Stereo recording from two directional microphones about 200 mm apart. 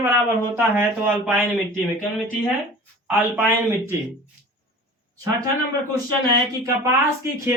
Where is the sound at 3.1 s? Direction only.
5° right (ahead or behind).